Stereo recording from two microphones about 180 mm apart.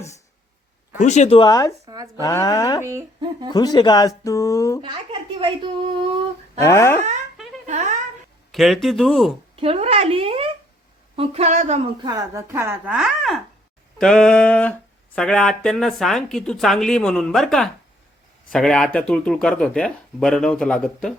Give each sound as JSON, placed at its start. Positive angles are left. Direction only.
{"t": 0.9, "sound": "speech", "side_deg": 40}
{"t": 1.4, "sound": "speech", "side_deg": 20}
{"t": 1.9, "sound": "speech", "side_deg": -20}
{"t": 2.2, "sound": "speech", "side_deg": 20}
{"t": 2.8, "sound": "speech", "side_deg": -15}
{"t": 3.5, "sound": "speech", "side_deg": 20}
{"t": 4.8, "sound": "speech", "side_deg": -25}
{"t": 6.6, "sound": "speech", "side_deg": 15}
{"t": 7.7, "sound": "a sound", "side_deg": -40}
{"t": 8.5, "sound": "speech", "side_deg": 0}
{"t": 9.6, "sound": "speech", "side_deg": -35}
{"t": 12.0, "sound": "speech", "side_deg": -20}